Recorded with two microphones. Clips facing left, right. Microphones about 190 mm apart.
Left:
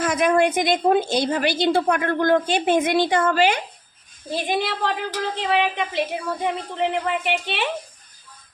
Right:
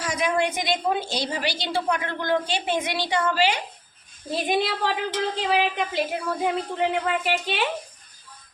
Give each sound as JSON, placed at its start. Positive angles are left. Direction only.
{"t": 0.0, "sound": "a woman's voice", "side_deg": 55}
{"t": 4.3, "sound": "a woman's voice", "side_deg": 0}